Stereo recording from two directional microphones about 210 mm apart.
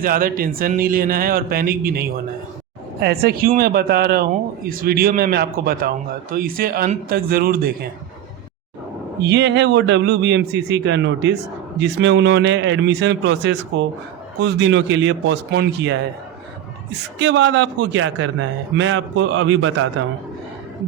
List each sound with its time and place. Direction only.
0.0 s a man's voice: 40° right (ahead or behind)
9.2 s a man's voice: 55° right (ahead or behind)